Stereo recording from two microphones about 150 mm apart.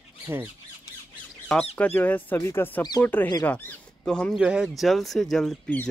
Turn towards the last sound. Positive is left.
turn(degrees=0)  # may be behind; listen again after turning